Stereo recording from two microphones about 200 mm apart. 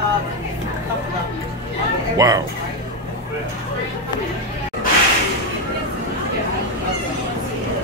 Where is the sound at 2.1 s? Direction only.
20° right (ahead or behind).